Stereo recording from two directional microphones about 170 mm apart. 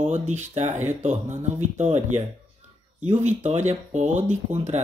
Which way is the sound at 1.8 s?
45° right (ahead or behind).